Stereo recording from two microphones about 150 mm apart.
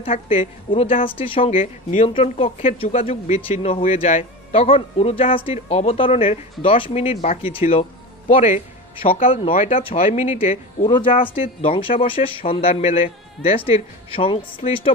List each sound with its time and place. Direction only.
0.0 s speech: 40° left (ahead or behind)
8.9 s speech: 40° left (ahead or behind)